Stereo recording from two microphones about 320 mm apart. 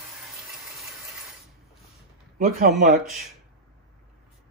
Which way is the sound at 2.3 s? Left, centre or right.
Right.